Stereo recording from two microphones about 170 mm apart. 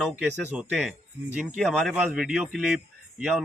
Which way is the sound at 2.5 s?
Centre (ahead or behind).